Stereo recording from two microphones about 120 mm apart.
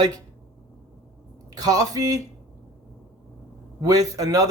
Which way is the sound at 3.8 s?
30° right (ahead or behind).